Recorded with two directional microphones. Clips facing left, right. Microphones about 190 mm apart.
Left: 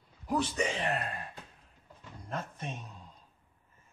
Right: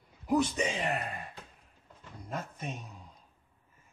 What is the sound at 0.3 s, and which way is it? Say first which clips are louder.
Speech: right 3 dB; 15° right (ahead or behind).